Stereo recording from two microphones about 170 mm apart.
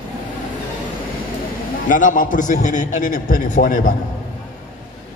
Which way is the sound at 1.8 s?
50° left (ahead or behind).